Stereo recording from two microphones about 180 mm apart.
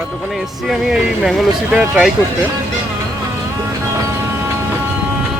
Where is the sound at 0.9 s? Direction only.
Centre (ahead or behind).